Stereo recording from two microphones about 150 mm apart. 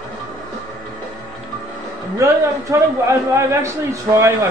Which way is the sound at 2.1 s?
20° right (ahead or behind).